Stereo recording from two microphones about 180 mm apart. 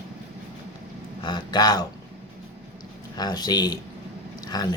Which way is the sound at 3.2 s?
20° left (ahead or behind).